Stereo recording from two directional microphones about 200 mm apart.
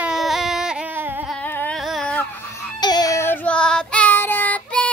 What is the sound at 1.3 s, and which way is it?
Carnatic music, 10° left (ahead or behind).